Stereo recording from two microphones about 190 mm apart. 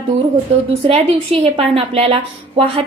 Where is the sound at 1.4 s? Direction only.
30° right (ahead or behind).